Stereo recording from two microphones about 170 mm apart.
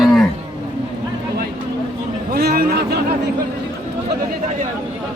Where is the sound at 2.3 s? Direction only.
65° right (ahead or behind).